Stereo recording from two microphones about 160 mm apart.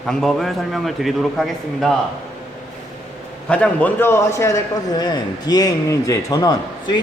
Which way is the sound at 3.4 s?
5° left (ahead or behind).